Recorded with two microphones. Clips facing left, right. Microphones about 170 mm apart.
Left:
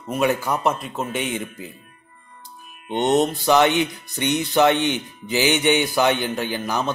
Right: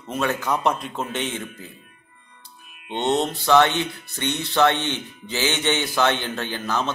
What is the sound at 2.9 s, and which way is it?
Speech, 15° left (ahead or behind).